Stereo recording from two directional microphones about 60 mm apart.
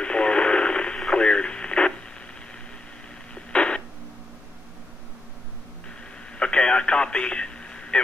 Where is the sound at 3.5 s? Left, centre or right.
Centre.